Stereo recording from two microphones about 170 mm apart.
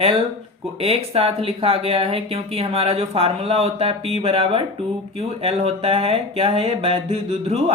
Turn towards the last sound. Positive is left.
turn(degrees=-35)  # may be behind; listen again after turning